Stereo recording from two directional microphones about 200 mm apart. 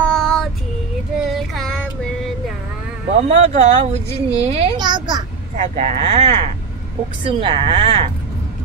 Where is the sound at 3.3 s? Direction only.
30° right (ahead or behind).